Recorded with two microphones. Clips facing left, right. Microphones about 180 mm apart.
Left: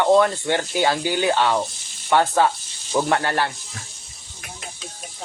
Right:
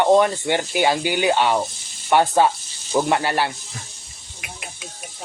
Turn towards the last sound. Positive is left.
turn(degrees=-15)  # may be behind; listen again after turning